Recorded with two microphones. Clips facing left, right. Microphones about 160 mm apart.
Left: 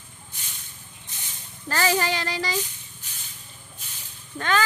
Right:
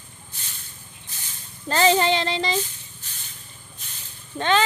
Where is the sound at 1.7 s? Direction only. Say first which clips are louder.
Right 5 dB; 25° right (ahead or behind).